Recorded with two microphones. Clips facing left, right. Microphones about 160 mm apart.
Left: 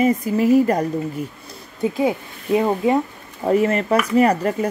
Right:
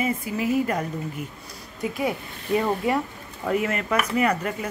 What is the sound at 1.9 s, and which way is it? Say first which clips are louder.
Speech: left 5 dB; 25° left (ahead or behind).